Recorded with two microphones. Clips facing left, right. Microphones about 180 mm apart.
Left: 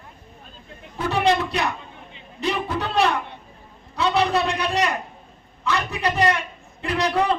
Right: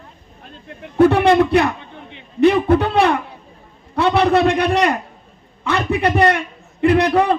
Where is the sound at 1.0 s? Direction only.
60° right (ahead or behind).